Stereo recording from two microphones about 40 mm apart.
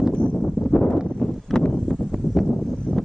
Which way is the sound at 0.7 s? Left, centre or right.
Left.